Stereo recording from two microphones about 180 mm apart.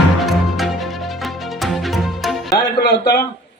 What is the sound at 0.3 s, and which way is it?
Music, centre (ahead or behind).